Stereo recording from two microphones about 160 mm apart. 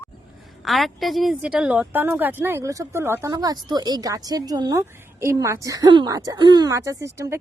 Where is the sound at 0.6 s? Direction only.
Centre (ahead or behind).